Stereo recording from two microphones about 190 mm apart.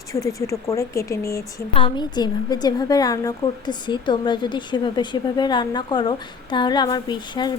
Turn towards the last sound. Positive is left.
turn(degrees=20)  # may be behind; listen again after turning